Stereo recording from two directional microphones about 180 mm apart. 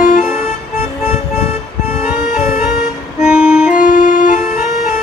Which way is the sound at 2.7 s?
5° right (ahead or behind).